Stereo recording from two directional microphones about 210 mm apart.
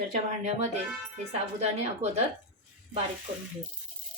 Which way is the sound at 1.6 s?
30° right (ahead or behind).